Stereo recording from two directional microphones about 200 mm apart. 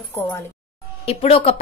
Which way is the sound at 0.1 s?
10° left (ahead or behind).